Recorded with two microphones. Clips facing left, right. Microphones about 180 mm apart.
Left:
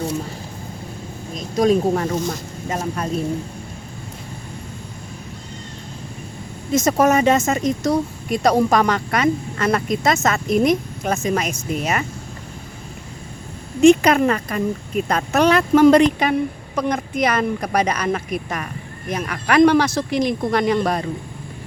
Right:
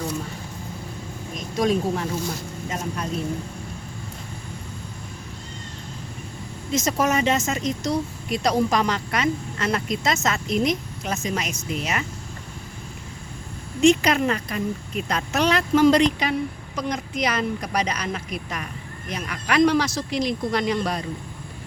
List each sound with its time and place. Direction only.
1.5 s speech: 40° left (ahead or behind)
6.7 s speech: 50° left (ahead or behind)
13.8 s speech: 55° left (ahead or behind)